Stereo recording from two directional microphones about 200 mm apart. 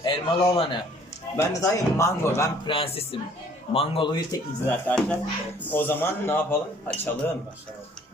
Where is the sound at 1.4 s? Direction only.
15° left (ahead or behind).